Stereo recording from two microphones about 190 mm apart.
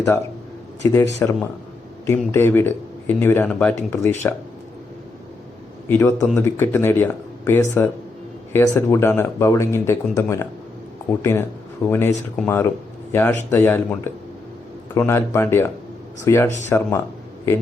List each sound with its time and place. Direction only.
0.8 s speech: 15° left (ahead or behind)
5.9 s speech: 15° left (ahead or behind)